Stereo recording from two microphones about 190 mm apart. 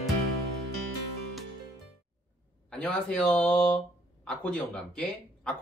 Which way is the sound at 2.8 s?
5° left (ahead or behind).